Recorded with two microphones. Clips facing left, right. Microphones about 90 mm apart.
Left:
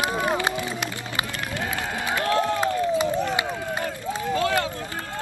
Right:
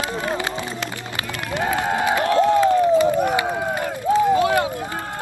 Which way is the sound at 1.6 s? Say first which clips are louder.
Right 10 dB; 60° right (ahead or behind).